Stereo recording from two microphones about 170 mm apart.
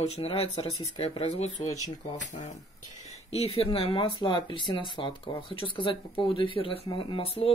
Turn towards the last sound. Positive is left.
turn(degrees=35)  # may be behind; listen again after turning